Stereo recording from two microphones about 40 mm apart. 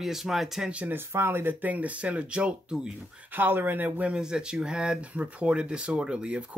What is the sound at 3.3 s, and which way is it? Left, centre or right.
Speech, right.